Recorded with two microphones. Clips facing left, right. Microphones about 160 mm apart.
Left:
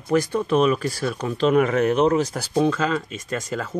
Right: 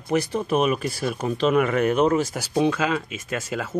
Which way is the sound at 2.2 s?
5° right (ahead or behind).